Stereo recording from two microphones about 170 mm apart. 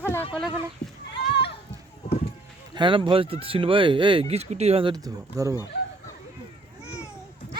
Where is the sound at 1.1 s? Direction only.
80° left.